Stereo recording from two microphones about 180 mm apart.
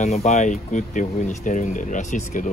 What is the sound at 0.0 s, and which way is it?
Speech, 40° left (ahead or behind).